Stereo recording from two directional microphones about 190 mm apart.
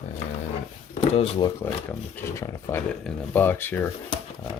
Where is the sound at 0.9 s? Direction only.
35° left (ahead or behind).